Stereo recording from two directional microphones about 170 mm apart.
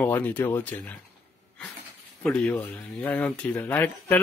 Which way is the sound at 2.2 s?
5° left (ahead or behind).